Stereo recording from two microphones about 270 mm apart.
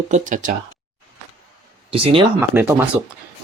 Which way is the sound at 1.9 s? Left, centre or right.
Centre.